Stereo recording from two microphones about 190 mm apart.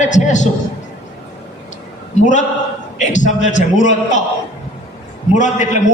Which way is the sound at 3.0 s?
40° left (ahead or behind).